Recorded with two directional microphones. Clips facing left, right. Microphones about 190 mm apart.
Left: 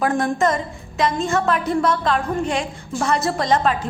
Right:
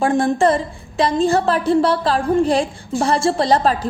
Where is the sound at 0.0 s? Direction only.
30° right (ahead or behind).